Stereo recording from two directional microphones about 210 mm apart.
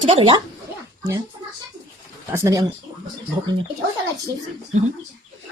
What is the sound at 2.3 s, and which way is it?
Speech, 15° right (ahead or behind).